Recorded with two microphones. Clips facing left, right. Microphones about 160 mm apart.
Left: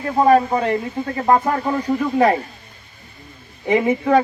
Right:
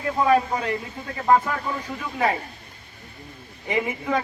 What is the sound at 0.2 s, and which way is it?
Speech, 45° left (ahead or behind).